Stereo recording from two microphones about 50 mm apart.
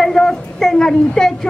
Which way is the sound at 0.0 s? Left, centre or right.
Centre.